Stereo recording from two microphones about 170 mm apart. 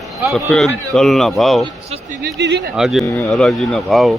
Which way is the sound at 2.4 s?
90° right.